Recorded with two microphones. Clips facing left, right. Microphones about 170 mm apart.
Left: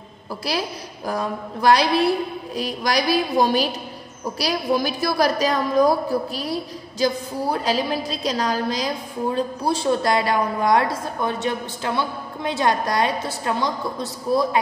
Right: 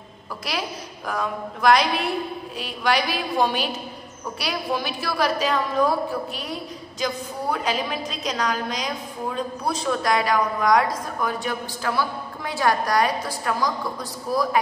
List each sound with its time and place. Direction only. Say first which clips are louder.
1.0 s a woman's voice: left 2 dB; 35° left (ahead or behind)